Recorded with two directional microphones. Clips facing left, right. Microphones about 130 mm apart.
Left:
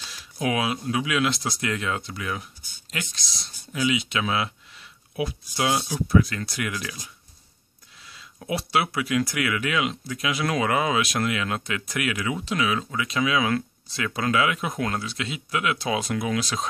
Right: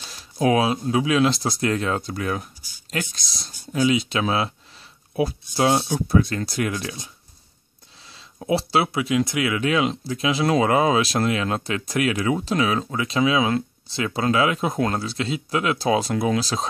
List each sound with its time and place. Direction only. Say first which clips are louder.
0.1 s speech: right 7 dB; 35° right (ahead or behind)
8.1 s speech: right 7 dB; 30° right (ahead or behind)